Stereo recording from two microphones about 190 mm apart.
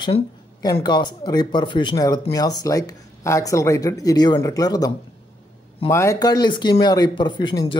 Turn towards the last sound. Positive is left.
turn(degrees=25)  # may be behind; listen again after turning